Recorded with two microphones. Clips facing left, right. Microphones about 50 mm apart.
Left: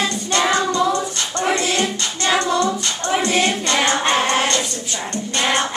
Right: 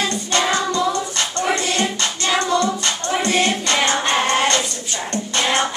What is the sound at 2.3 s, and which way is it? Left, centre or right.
Music, centre.